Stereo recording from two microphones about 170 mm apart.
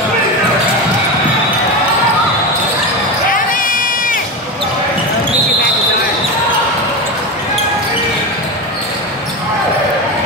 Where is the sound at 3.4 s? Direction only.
55° left (ahead or behind).